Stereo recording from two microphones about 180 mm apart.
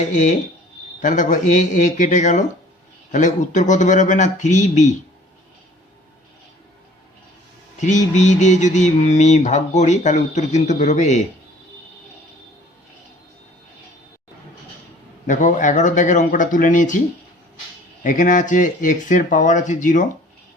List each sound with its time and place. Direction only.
0.0 s mantra: 40° left (ahead or behind)
1.0 s speech: 45° left (ahead or behind)
7.8 s mantra: 40° left (ahead or behind)
15.3 s speech: 45° left (ahead or behind)
18.0 s speech: 45° left (ahead or behind)